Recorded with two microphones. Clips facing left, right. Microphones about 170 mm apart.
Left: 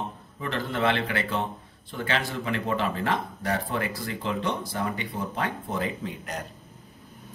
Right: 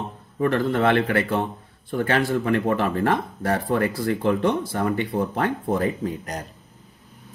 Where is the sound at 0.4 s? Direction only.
50° right (ahead or behind).